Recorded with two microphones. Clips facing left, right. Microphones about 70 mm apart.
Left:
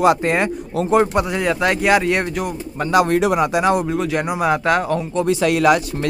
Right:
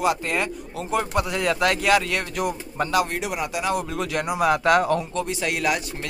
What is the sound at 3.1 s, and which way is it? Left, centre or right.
Speech, left.